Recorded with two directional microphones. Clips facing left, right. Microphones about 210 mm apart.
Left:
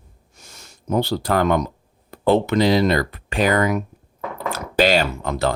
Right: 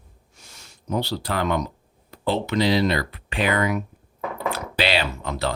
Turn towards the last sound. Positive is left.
turn(degrees=50)  # may be behind; listen again after turning